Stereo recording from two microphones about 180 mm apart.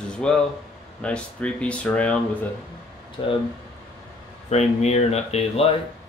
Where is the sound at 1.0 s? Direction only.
5° left (ahead or behind).